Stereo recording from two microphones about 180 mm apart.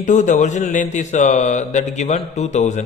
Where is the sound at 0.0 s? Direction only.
40° left (ahead or behind).